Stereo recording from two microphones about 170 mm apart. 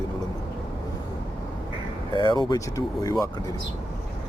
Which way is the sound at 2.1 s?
25° left (ahead or behind).